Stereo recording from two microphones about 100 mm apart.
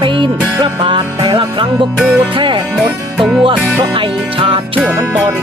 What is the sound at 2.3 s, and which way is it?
Music, 55° right (ahead or behind).